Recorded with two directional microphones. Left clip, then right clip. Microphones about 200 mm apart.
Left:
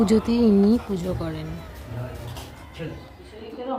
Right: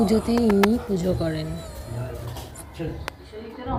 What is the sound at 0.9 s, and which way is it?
Speech, 5° right (ahead or behind).